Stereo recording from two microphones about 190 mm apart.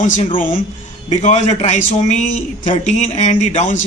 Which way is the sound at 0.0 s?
40° left (ahead or behind).